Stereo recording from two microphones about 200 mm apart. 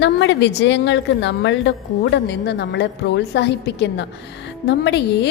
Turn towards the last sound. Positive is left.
turn(degrees=60)  # may be behind; listen again after turning